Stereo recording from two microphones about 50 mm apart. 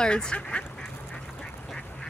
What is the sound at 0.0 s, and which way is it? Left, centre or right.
Speech, centre.